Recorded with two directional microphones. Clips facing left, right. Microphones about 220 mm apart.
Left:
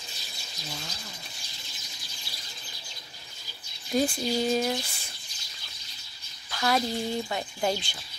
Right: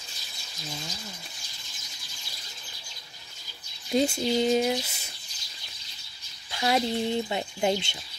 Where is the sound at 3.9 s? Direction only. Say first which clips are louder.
Right 2 dB; 25° right (ahead or behind).